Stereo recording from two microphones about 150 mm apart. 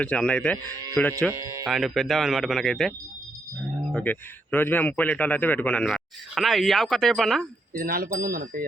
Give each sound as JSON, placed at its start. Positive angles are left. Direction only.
{"t": 0.0, "sound": "a man's voice", "side_deg": 10}
{"t": 1.3, "sound": "speech", "side_deg": -20}
{"t": 1.6, "sound": "speech", "side_deg": -5}
{"t": 3.9, "sound": "a man's voice", "side_deg": 10}
{"t": 7.7, "sound": "speech", "side_deg": -75}